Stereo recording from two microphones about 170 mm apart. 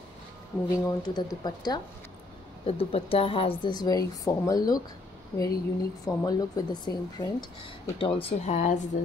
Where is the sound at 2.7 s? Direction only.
35° left (ahead or behind).